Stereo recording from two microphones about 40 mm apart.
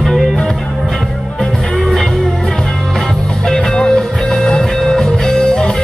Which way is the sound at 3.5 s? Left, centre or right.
Centre.